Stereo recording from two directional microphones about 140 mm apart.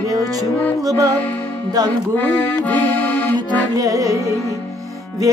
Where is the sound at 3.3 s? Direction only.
10° left (ahead or behind).